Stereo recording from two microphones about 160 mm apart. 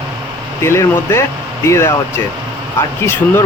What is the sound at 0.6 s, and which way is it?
Speech, 15° left (ahead or behind).